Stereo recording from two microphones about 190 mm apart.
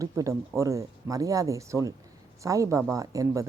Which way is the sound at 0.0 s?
15° right (ahead or behind).